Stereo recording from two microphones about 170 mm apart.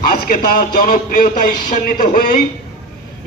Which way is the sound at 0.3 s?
60° left (ahead or behind).